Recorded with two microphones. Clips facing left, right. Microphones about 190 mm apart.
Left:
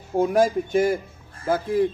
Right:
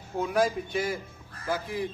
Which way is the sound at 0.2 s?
45° left (ahead or behind).